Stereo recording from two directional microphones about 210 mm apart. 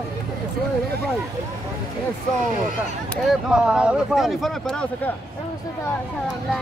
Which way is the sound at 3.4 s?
5° right (ahead or behind).